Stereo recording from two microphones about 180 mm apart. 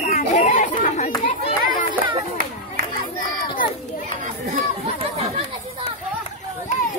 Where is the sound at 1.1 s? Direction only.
30° left (ahead or behind).